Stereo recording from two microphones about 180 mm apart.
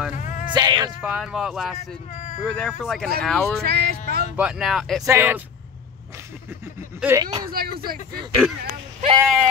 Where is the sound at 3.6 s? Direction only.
60° right (ahead or behind).